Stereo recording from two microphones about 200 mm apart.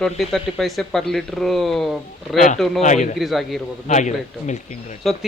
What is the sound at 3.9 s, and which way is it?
Speech, 35° left (ahead or behind).